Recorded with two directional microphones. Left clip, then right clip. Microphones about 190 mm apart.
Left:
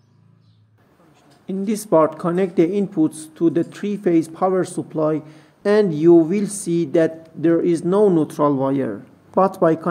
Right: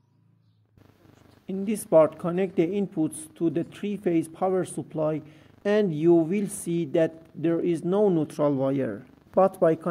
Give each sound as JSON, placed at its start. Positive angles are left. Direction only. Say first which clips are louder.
{"t": 1.5, "sound": "speech", "louder": "left 4 dB", "side_deg": -25}